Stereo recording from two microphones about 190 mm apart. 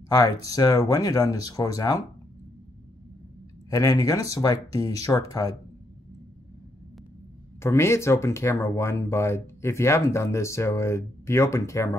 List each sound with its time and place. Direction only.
0.6 s speech: 20° left (ahead or behind)
3.7 s speech: 20° left (ahead or behind)
7.6 s speech: 15° left (ahead or behind)